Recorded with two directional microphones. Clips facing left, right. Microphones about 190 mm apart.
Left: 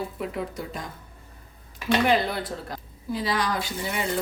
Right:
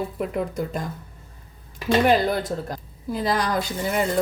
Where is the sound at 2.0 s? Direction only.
45° right (ahead or behind).